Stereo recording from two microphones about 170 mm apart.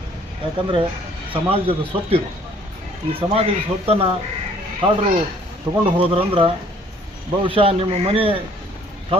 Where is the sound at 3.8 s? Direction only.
35° right (ahead or behind).